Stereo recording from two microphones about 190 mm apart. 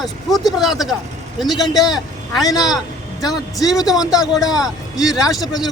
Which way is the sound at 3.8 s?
Centre (ahead or behind).